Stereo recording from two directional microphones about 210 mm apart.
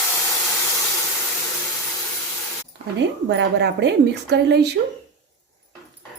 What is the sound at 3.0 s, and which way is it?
A woman's voice, 55° right (ahead or behind).